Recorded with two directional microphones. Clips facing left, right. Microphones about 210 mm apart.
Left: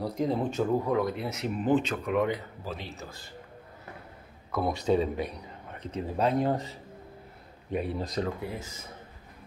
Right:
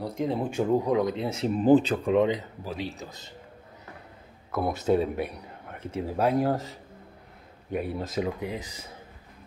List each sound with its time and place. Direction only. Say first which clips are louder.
0.0 s speech: even; centre (ahead or behind)
0.5 s speech: right 3 dB; 15° right (ahead or behind)
4.5 s speech: right 2 dB; 5° right (ahead or behind)
8.4 s speech: right 3 dB; 15° right (ahead or behind)